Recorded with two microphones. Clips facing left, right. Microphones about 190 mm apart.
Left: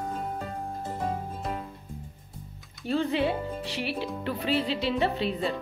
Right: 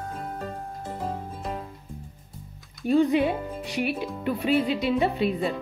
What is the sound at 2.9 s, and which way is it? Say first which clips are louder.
Speech: right 5 dB; 15° right (ahead or behind).